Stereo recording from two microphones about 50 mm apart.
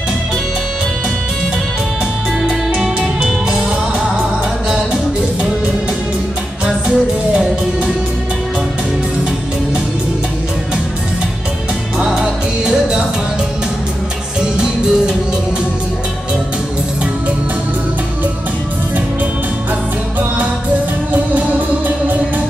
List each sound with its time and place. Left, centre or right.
2.4 s music: centre
12.0 s music: centre
14.6 s music: centre
21.1 s music: right